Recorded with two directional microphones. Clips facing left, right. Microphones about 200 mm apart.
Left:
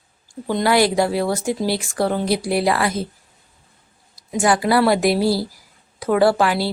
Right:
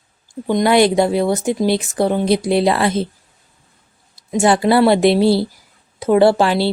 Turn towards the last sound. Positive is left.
turn(degrees=-25)  # may be behind; listen again after turning